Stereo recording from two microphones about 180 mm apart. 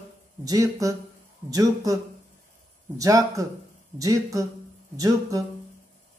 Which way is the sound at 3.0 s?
20° right (ahead or behind).